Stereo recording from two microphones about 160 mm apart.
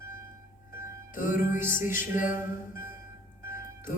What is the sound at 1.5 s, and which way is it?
A capella, 15° right (ahead or behind).